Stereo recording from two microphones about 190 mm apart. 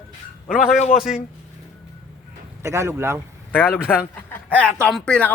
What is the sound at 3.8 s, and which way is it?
Speech, 10° left (ahead or behind).